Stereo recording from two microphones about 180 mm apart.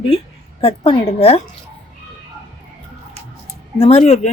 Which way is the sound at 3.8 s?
35° left (ahead or behind).